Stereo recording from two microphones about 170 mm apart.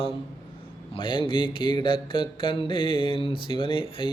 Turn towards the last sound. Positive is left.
turn(degrees=30)  # may be behind; listen again after turning